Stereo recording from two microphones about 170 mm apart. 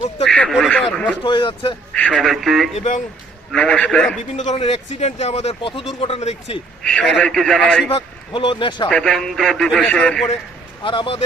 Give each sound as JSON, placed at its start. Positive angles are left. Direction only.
{"t": 0.3, "sound": "speech", "side_deg": 0}
{"t": 1.2, "sound": "a man's voice", "side_deg": 30}
{"t": 1.9, "sound": "speech", "side_deg": 5}
{"t": 2.7, "sound": "speech", "side_deg": 45}
{"t": 3.5, "sound": "speech", "side_deg": 5}
{"t": 4.4, "sound": "speech", "side_deg": 40}
{"t": 6.8, "sound": "speech", "side_deg": 5}
{"t": 7.9, "sound": "a man's voice", "side_deg": 30}
{"t": 8.9, "sound": "speech", "side_deg": 5}
{"t": 10.8, "sound": "speech", "side_deg": 30}